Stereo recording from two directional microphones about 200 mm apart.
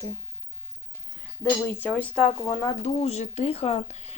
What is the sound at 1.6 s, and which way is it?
Speech, 10° left (ahead or behind).